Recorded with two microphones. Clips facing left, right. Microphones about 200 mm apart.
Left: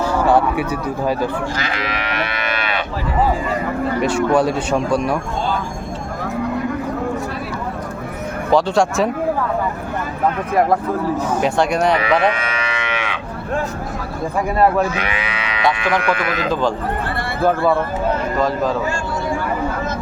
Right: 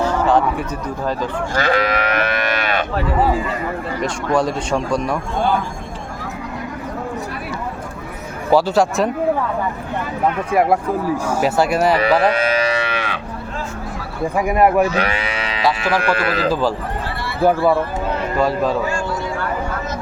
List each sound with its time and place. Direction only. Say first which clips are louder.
0.0 s speech: left 1 dB; 10° left (ahead or behind)
1.5 s livestock: right 6 dB; 45° right (ahead or behind)
4.0 s speech: left 2 dB; 5° left (ahead or behind)
8.4 s speech: right 1 dB; 5° right (ahead or behind)
11.2 s speech: left 1 dB; 10° right (ahead or behind)
11.9 s moo: right 2 dB; 35° right (ahead or behind)
14.3 s a man's voice: right 1 dB; 15° right (ahead or behind)
14.9 s moo: right 3 dB; 35° right (ahead or behind)
15.9 s speech: right 1 dB; 30° right (ahead or behind)
16.5 s a man's voice: even; 5° right (ahead or behind)